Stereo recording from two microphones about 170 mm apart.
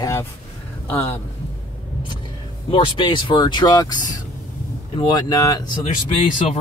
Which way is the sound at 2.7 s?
30° left (ahead or behind).